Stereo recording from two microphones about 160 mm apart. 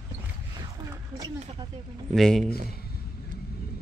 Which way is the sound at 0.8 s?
25° right (ahead or behind).